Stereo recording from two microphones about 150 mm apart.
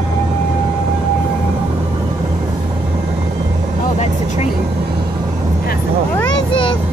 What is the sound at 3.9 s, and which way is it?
Speech, 50° left (ahead or behind).